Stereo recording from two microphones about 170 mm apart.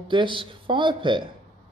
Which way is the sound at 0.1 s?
30° right (ahead or behind).